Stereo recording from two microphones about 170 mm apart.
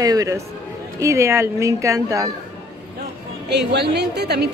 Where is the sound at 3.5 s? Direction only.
80° right.